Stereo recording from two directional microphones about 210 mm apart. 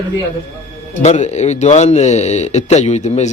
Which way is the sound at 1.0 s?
35° left (ahead or behind).